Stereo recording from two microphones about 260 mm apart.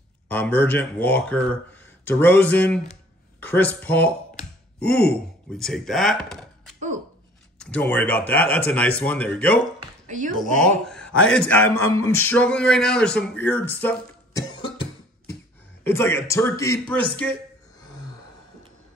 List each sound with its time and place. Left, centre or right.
0.3 s speech: centre
7.5 s speech: centre
10.0 s speech: right
10.9 s a sound: centre
11.2 s speech: centre
14.6 s cough: centre
15.8 s speech: centre